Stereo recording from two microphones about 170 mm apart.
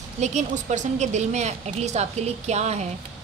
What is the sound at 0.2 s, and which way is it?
A woman's voice, 45° right (ahead or behind).